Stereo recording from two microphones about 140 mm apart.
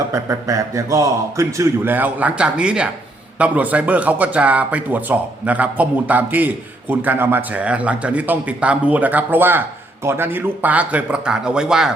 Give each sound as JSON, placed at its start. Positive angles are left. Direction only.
{"t": 0.1, "sound": "a man's voice", "side_deg": -25}